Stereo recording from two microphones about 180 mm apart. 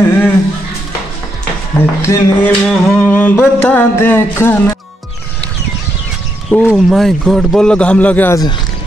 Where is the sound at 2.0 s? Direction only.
15° left (ahead or behind).